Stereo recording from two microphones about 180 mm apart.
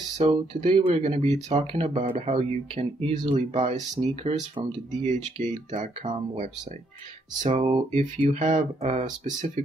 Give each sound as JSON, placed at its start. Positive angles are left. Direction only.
{"t": 0.2, "sound": "speech", "side_deg": -35}